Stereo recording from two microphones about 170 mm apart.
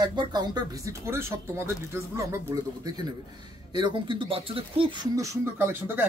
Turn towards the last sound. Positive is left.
turn(degrees=-15)  # may be behind; listen again after turning